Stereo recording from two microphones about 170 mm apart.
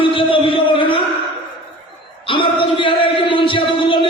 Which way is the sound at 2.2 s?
30° left (ahead or behind).